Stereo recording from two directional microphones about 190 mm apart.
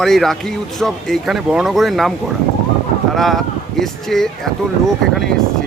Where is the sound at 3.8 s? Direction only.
Centre (ahead or behind).